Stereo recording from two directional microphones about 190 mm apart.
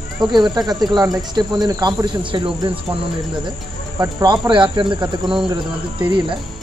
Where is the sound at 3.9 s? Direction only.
20° right (ahead or behind).